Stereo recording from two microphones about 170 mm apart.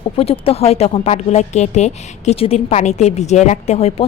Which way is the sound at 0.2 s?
35° left (ahead or behind).